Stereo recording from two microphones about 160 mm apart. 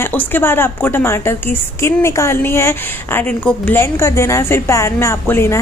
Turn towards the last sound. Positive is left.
turn(degrees=15)  # may be behind; listen again after turning